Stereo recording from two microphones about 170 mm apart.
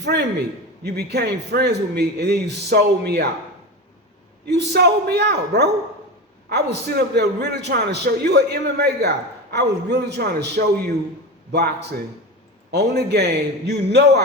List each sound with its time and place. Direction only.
0.0 s a man's voice: 80° right
4.4 s a man's voice: 80° right